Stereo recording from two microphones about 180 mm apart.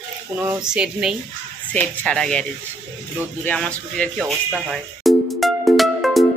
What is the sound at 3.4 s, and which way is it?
Speech, 5° left (ahead or behind).